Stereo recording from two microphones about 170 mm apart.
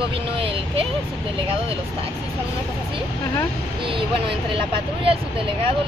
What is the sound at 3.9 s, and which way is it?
Speech, 30° right (ahead or behind).